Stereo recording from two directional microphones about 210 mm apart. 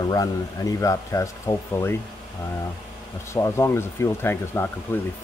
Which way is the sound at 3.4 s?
15° left (ahead or behind).